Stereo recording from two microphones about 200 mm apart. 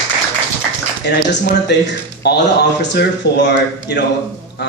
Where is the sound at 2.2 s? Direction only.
60° left (ahead or behind).